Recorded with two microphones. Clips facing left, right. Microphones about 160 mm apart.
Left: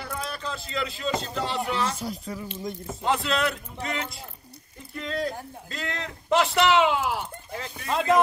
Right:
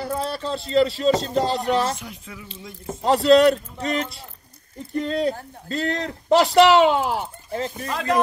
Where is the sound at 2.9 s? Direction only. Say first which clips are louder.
Right 11 dB; 35° right (ahead or behind).